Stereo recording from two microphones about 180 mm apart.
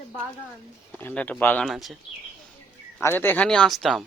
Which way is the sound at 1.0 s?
10° left (ahead or behind).